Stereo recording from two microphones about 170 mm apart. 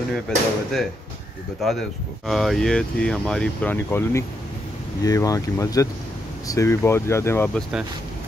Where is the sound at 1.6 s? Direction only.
Centre (ahead or behind).